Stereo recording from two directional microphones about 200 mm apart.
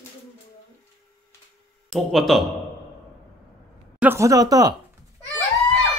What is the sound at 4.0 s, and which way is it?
Speech, 10° right (ahead or behind).